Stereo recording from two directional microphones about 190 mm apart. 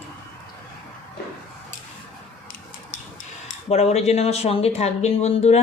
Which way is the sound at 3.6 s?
35° left (ahead or behind).